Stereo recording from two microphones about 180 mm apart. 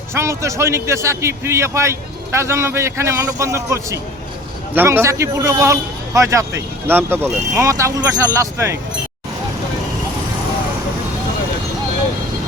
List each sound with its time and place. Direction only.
0.1 s a man's voice: 15° right (ahead or behind)